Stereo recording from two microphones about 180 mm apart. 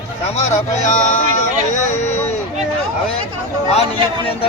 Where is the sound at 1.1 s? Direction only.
45° left (ahead or behind).